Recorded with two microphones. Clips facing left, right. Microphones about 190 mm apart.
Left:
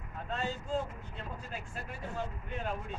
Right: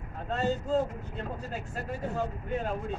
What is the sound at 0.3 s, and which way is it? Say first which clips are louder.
Speech: right 7 dB; 40° right (ahead or behind).